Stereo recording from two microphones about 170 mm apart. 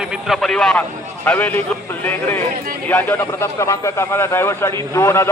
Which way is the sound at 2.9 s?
10° left (ahead or behind).